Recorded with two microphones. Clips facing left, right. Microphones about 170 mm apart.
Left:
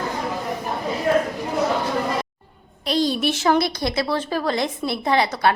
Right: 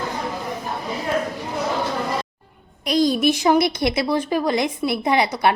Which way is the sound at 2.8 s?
10° right (ahead or behind).